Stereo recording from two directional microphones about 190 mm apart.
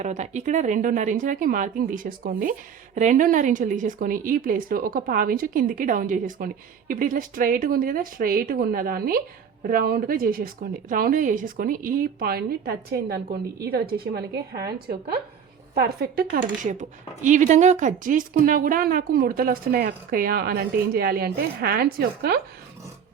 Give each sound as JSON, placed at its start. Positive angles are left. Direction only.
{"t": 0.0, "sound": "speech", "side_deg": -40}